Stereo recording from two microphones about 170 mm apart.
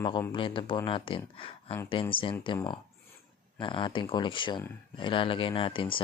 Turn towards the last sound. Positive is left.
turn(degrees=30)  # may be behind; listen again after turning